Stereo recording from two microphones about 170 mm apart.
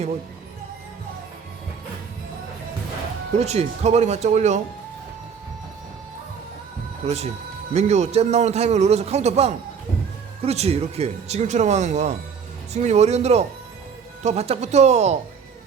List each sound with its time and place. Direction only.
3.3 s a man's voice: 40° right (ahead or behind)
7.0 s a man's voice: 40° right (ahead or behind)